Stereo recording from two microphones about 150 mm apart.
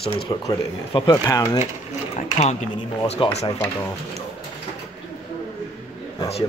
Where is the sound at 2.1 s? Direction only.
45° left (ahead or behind).